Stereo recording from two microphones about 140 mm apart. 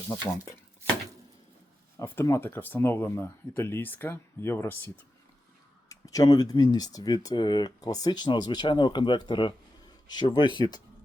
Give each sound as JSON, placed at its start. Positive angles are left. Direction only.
{"t": 2.0, "sound": "speech", "side_deg": 20}
{"t": 5.9, "sound": "speech", "side_deg": 25}